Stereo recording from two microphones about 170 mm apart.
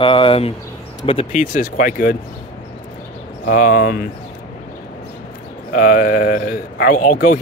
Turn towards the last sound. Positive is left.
turn(degrees=50)  # may be behind; listen again after turning